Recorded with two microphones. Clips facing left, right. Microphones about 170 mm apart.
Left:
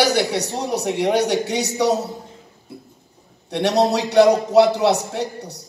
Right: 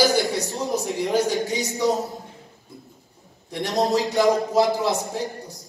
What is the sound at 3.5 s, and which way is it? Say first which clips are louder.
A man's voice: left 4 dB; 70° left (ahead or behind).